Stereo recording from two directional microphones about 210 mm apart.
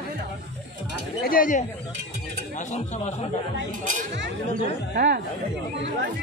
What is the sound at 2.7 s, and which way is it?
Speech, 30° left (ahead or behind).